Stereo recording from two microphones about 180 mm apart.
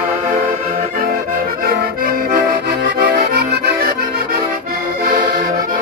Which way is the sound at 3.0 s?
60° right (ahead or behind).